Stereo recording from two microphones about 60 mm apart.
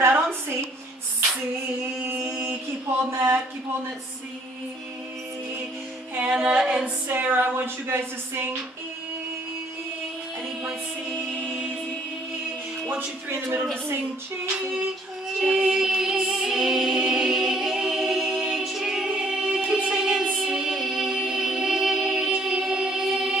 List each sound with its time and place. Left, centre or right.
0.0 s a sound: right
3.1 s speech: right
6.3 s female singing: centre
7.1 s speech: right
13.3 s speech: right
15.2 s music: centre